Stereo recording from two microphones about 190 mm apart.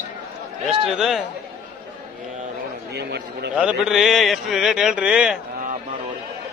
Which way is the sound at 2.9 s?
65° right (ahead or behind).